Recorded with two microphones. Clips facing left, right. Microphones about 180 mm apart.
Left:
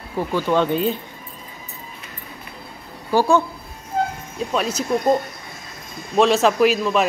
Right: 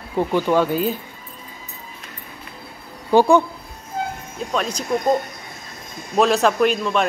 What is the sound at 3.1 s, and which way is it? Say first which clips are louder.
Speech: right 3 dB; 15° right (ahead or behind).